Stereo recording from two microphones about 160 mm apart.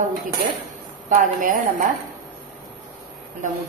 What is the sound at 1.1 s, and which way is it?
Speech, 55° right (ahead or behind).